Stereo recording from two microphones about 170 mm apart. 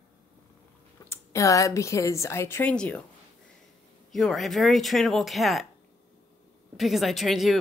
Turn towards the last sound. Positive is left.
turn(degrees=0)  # may be behind; listen again after turning